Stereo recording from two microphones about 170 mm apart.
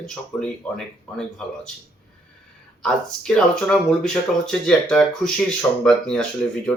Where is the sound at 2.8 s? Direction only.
5° left (ahead or behind).